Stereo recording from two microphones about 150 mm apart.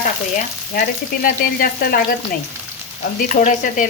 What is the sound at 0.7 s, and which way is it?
Frying, 75° left (ahead or behind).